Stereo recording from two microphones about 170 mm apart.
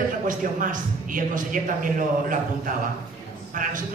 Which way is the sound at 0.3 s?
50° right (ahead or behind).